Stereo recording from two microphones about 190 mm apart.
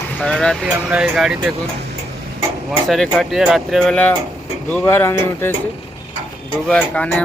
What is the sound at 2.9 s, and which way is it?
Speech, centre (ahead or behind).